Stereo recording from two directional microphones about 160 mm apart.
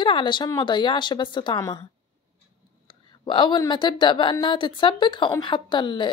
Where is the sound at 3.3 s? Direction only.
30° left (ahead or behind).